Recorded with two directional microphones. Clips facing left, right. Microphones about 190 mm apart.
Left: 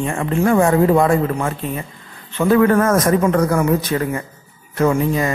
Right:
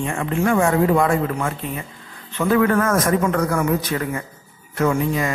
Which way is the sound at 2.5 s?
35° left (ahead or behind).